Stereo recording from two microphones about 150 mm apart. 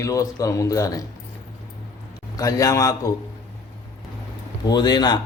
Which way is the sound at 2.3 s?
25° left (ahead or behind).